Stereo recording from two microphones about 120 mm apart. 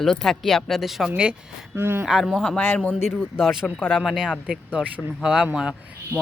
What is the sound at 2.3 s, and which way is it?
Speech, 10° left (ahead or behind).